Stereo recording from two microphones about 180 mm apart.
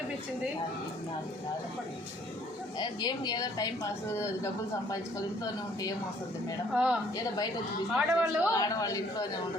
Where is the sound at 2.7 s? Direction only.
25° left (ahead or behind).